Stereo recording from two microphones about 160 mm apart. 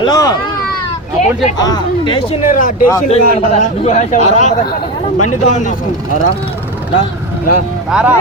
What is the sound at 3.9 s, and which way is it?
Speech, 50° left (ahead or behind).